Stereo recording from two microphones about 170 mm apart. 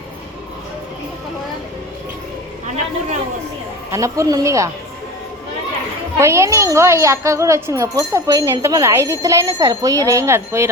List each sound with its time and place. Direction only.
3.9 s speech: 20° right (ahead or behind)
6.1 s speech: 15° right (ahead or behind)